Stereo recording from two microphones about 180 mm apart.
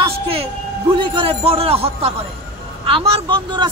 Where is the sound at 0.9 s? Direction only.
25° right (ahead or behind).